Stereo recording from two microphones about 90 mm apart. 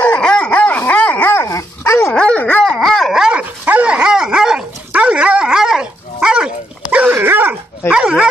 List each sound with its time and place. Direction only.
0.0 s dog: 10° left (ahead or behind); by 2.1 s 30° left (ahead or behind)
2.1 s dog: 10° left (ahead or behind)
2.8 s dog: centre (ahead or behind); by 7.5 s 25° right (ahead or behind)
7.9 s dog: 10° right (ahead or behind)